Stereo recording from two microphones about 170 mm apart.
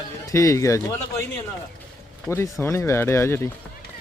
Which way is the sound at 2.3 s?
15° left (ahead or behind).